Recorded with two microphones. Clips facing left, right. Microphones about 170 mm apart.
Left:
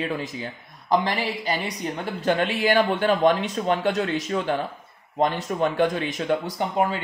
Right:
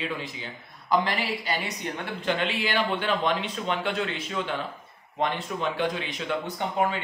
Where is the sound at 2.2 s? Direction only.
45° left (ahead or behind).